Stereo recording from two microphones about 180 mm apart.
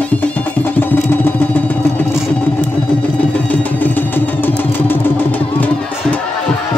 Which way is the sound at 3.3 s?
10° left (ahead or behind).